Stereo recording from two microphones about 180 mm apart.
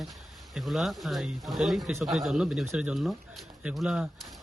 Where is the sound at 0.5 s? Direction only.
Centre (ahead or behind).